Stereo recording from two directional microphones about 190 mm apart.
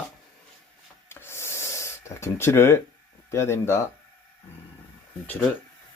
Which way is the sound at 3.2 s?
15° left (ahead or behind).